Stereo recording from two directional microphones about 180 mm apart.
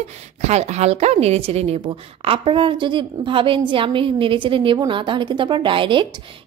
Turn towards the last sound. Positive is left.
turn(degrees=-30)  # may be behind; listen again after turning